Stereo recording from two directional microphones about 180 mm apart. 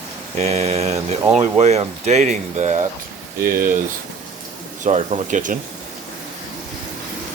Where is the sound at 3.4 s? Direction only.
55° right (ahead or behind).